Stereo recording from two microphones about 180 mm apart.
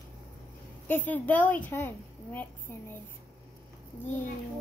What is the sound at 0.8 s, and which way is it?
A woman's voice, 10° left (ahead or behind).